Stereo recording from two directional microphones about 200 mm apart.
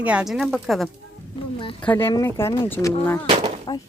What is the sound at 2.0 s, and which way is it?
Speech, 20° left (ahead or behind).